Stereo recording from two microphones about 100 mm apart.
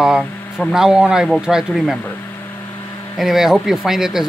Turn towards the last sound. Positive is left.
turn(degrees=-5)  # may be behind; listen again after turning